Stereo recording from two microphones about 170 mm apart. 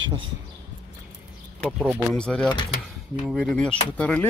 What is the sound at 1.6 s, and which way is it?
Speech, centre (ahead or behind).